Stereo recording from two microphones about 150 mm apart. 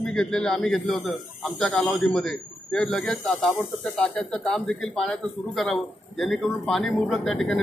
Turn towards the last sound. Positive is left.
turn(degrees=5)  # may be behind; listen again after turning